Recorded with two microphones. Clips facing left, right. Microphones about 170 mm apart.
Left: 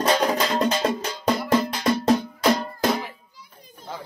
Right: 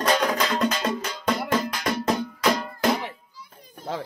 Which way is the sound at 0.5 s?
35° left (ahead or behind).